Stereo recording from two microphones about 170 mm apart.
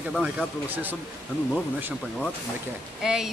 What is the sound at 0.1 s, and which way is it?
Speech, 5° right (ahead or behind).